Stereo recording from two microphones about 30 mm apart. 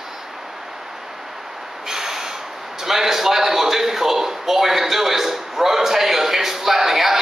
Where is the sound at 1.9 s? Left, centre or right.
Centre.